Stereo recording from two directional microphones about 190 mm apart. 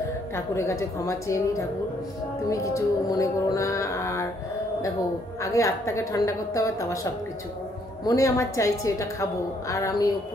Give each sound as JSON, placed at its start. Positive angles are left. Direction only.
{"t": 0.6, "sound": "a woman's voice", "side_deg": 15}
{"t": 5.4, "sound": "a woman's voice", "side_deg": 15}
{"t": 8.0, "sound": "a woman's voice", "side_deg": 20}